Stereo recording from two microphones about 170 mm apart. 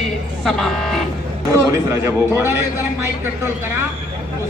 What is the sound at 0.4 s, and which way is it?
Speech, centre (ahead or behind).